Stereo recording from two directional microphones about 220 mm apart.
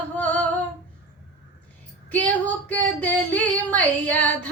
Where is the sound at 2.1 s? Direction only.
5° left (ahead or behind).